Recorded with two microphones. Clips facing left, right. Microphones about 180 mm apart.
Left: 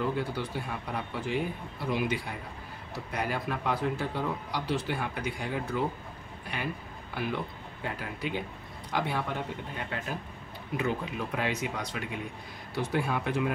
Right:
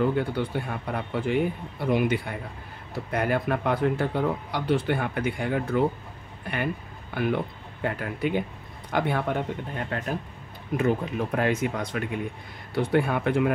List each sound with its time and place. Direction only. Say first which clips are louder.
0.0 s speech: right 6 dB; 55° right (ahead or behind)
7.2 s speech: right 7 dB; 55° right (ahead or behind)